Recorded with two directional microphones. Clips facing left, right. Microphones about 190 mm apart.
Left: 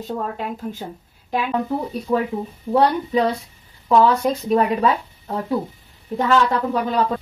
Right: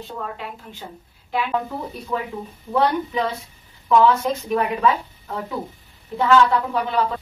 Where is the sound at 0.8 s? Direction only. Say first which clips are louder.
Left 5 dB; 40° left (ahead or behind).